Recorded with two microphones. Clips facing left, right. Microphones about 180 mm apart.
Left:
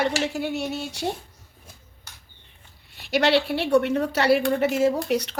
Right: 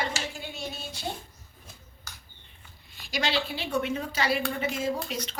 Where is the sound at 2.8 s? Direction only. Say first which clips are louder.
Left 10 dB; 65° left (ahead or behind).